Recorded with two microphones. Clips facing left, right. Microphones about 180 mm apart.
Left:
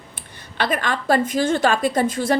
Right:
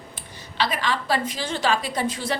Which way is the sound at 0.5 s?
50° left (ahead or behind).